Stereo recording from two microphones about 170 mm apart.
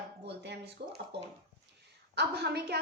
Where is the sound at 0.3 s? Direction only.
80° right.